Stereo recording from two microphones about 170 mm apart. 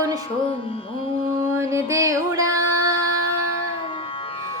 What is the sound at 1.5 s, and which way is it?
Music, 15° right (ahead or behind).